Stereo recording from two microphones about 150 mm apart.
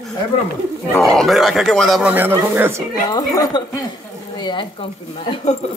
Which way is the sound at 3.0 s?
25° left (ahead or behind).